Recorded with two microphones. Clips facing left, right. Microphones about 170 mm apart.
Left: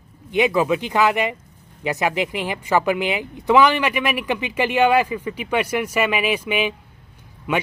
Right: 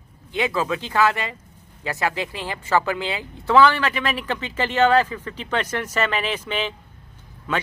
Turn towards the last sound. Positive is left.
turn(degrees=15)  # may be behind; listen again after turning